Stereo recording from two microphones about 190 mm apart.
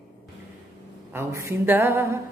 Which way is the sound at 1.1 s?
15° right (ahead or behind).